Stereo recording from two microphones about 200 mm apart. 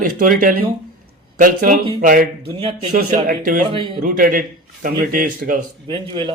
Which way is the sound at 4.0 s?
45° right (ahead or behind).